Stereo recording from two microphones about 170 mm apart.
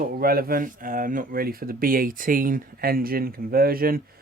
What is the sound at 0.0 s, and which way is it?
Speech, 60° right (ahead or behind).